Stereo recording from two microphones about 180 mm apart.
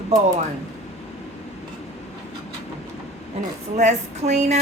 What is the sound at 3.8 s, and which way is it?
Speech, 40° right (ahead or behind).